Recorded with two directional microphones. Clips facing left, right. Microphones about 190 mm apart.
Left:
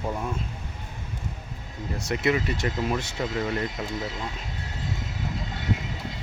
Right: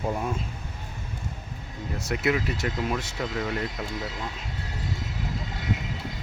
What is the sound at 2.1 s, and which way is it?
Speech, 5° right (ahead or behind).